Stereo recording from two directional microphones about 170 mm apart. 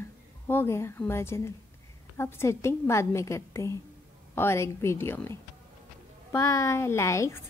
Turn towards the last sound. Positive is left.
turn(degrees=15)  # may be behind; listen again after turning